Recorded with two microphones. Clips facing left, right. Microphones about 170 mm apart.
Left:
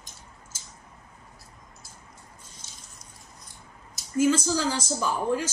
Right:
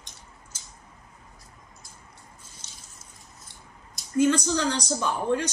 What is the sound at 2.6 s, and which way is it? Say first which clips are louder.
Water: left 1 dB; 70° right (ahead or behind).